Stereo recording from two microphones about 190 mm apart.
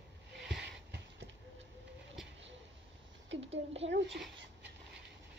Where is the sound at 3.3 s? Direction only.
80° right.